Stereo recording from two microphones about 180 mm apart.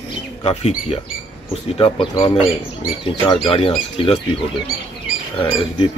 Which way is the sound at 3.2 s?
30° left (ahead or behind).